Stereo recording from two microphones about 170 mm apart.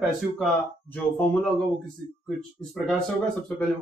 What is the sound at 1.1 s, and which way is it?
Speech, 10° left (ahead or behind).